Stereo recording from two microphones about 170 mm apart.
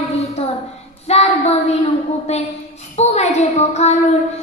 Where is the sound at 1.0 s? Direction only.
40° left (ahead or behind).